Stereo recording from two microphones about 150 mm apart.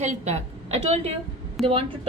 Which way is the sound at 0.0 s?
50° right (ahead or behind).